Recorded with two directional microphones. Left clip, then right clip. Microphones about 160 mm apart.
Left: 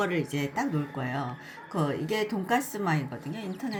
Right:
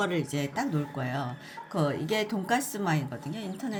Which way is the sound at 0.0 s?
15° right (ahead or behind).